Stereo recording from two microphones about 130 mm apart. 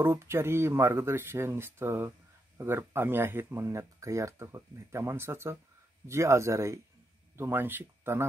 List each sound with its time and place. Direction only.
0.0 s speech: 20° right (ahead or behind)